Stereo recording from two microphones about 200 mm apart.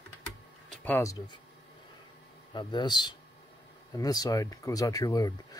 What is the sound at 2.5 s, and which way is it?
A man's voice, 20° left (ahead or behind).